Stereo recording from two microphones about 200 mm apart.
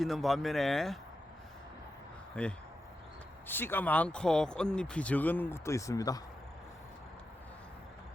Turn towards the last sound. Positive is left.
turn(degrees=15)  # may be behind; listen again after turning